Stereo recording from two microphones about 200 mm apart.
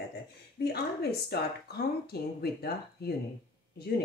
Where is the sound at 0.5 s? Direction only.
55° left (ahead or behind).